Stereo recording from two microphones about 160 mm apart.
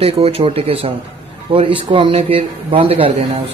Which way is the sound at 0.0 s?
35° right (ahead or behind).